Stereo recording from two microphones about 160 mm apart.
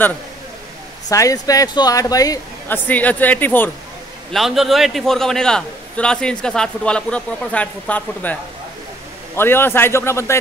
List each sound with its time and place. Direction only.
1.0 s speech: 20° left (ahead or behind)
2.9 s a man's voice: 10° left (ahead or behind)
4.3 s a man's voice: centre (ahead or behind); by 10.3 s 15° left (ahead or behind)